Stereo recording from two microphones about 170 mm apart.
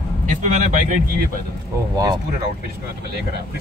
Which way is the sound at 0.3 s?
45° right (ahead or behind).